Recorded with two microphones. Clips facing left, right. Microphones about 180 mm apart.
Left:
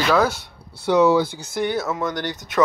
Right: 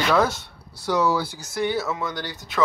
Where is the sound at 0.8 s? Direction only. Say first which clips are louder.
Left 6 dB; 25° left (ahead or behind).